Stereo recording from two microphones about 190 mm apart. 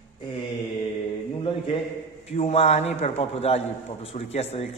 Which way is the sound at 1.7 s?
30° left (ahead or behind).